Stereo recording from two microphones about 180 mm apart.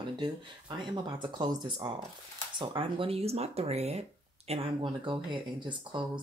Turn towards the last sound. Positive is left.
turn(degrees=-25)  # may be behind; listen again after turning